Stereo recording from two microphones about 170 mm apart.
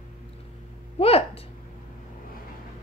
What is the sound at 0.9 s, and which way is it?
Speech, 35° left (ahead or behind).